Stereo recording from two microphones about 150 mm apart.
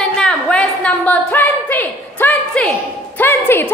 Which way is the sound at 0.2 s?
5° left (ahead or behind).